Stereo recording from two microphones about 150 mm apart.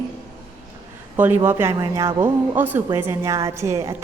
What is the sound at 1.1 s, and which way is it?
A woman's voice, 15° right (ahead or behind).